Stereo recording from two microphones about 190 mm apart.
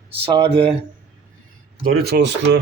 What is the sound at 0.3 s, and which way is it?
Speech, 25° right (ahead or behind).